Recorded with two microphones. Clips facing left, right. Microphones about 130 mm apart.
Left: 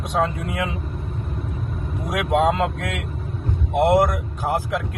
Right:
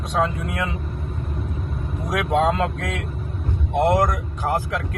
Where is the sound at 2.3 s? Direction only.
15° left (ahead or behind).